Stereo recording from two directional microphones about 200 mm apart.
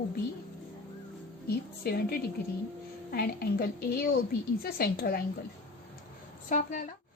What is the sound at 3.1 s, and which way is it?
A woman's voice, 50° left (ahead or behind).